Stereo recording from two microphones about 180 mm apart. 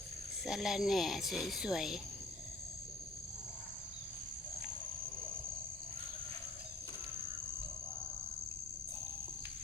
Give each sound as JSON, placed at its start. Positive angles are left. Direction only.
{"t": 0.4, "sound": "speech", "side_deg": 0}